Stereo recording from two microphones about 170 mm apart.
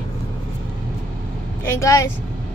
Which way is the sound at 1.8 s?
20° left (ahead or behind).